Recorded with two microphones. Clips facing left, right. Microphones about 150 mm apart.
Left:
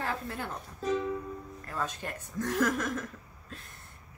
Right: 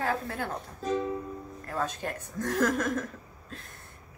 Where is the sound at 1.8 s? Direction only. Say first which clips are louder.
Right 3 dB; 45° right (ahead or behind).